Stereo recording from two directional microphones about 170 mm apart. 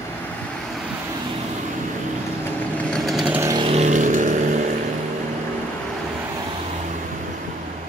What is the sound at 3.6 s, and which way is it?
Vehicle, 40° right (ahead or behind).